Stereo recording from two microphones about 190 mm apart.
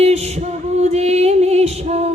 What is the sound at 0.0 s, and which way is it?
Music, 35° right (ahead or behind).